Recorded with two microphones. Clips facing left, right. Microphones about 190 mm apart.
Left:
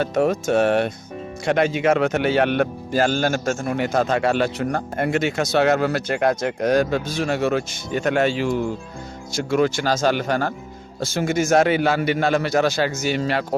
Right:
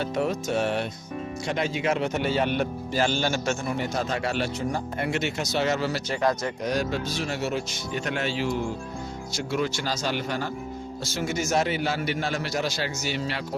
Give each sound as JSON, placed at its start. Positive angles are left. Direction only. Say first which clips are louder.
{"t": 0.0, "sound": "speech", "louder": "left 7 dB", "side_deg": 50}
{"t": 3.8, "sound": "speech", "louder": "left 7 dB", "side_deg": 60}
{"t": 7.9, "sound": "speech", "louder": "left 9 dB", "side_deg": 50}
{"t": 11.6, "sound": "speech", "louder": "left 8 dB", "side_deg": 65}